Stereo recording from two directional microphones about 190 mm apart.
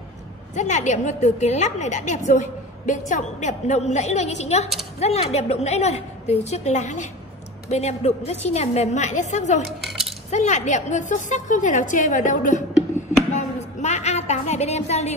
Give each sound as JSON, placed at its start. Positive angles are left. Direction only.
{"t": 0.6, "sound": "a woman's voice", "side_deg": 40}
{"t": 9.7, "sound": "cutlery", "side_deg": 0}
{"t": 10.3, "sound": "a woman's voice", "side_deg": 35}
{"t": 13.0, "sound": "chop", "side_deg": 40}
{"t": 13.3, "sound": "a sound", "side_deg": 40}